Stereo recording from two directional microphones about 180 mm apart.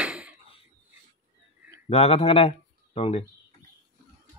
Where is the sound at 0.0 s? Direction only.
5° right (ahead or behind).